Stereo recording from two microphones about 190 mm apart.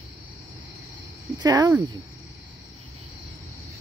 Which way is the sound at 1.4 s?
20° right (ahead or behind).